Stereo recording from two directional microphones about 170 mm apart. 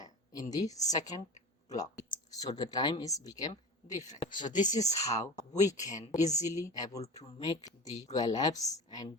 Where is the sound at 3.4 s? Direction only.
45° left (ahead or behind).